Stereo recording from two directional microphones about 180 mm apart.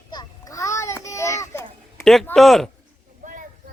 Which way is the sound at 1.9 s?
Centre (ahead or behind).